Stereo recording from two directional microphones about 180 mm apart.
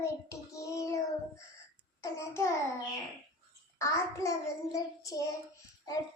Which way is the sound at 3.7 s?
15° left (ahead or behind).